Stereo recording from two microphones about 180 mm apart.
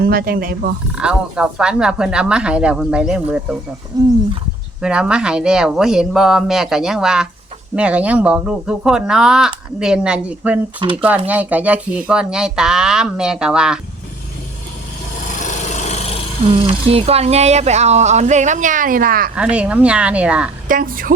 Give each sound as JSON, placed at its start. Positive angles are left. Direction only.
{"t": 0.0, "sound": "speech", "side_deg": -55}
{"t": 0.9, "sound": "speech", "side_deg": -5}
{"t": 3.9, "sound": "speech", "side_deg": -20}
{"t": 4.8, "sound": "speech", "side_deg": -5}
{"t": 15.3, "sound": "wood", "side_deg": 45}
{"t": 16.6, "sound": "speech", "side_deg": -35}
{"t": 19.4, "sound": "speech", "side_deg": -5}
{"t": 20.7, "sound": "a woman's voice", "side_deg": -50}